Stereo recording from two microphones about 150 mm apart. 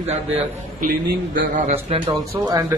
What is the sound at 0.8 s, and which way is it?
A man's voice, 65° right (ahead or behind).